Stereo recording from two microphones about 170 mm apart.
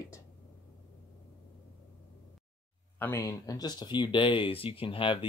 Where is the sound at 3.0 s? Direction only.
15° left (ahead or behind).